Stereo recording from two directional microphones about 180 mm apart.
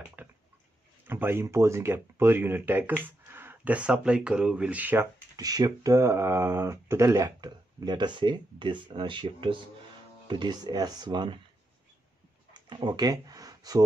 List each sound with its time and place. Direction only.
0.2 s a sound: 10° right (ahead or behind)
1.0 s speech: 10° right (ahead or behind)
5.3 s speech: 20° right (ahead or behind)
12.5 s speech: 25° right (ahead or behind)